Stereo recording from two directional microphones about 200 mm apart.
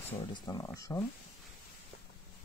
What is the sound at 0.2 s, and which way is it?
Speech, 20° left (ahead or behind).